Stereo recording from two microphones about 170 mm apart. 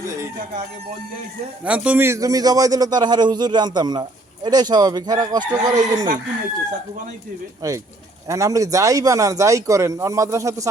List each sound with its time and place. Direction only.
1.6 s a man's voice: 5° right (ahead or behind); by 6.1 s 25° right (ahead or behind)
7.6 s a man's voice: 20° right (ahead or behind)